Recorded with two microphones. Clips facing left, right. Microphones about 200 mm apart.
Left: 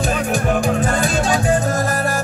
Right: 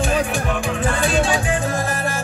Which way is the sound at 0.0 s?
40° left (ahead or behind).